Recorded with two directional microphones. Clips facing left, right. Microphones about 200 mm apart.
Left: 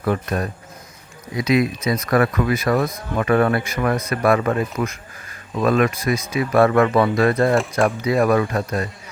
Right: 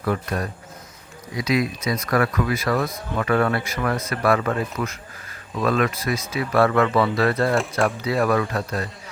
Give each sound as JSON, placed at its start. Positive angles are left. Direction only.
{"t": 0.0, "sound": "speech", "side_deg": 25}